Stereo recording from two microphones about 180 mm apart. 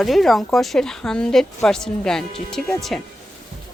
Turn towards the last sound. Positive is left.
turn(degrees=0)  # may be behind; listen again after turning